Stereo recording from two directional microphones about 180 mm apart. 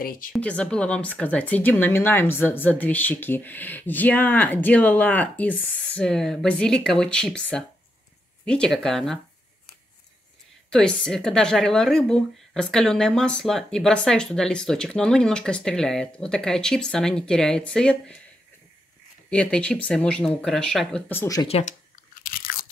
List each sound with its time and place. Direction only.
0.0 s speech: 55° left (ahead or behind)
0.3 s speech: 5° left (ahead or behind)
10.7 s speech: 5° left (ahead or behind)
19.3 s speech: 5° left (ahead or behind)
21.1 s speech: 15° left (ahead or behind)
21.5 s speech: 35° left (ahead or behind)
22.2 s crunch: 55° left (ahead or behind)